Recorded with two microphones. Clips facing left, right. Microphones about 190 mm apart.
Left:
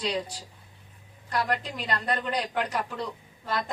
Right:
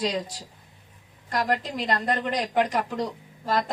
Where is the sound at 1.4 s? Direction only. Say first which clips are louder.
Right 4 dB; 40° right (ahead or behind).